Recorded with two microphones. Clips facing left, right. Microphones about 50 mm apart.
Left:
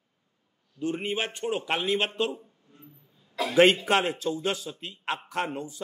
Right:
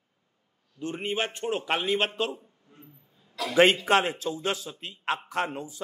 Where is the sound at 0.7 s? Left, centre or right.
Centre.